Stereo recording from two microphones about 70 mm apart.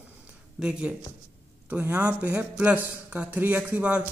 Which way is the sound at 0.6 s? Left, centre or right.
Centre.